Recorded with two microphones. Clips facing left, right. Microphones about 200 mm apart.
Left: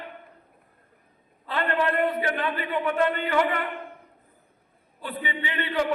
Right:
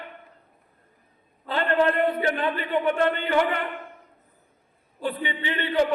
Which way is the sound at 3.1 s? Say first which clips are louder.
Right 1 dB; 30° right (ahead or behind).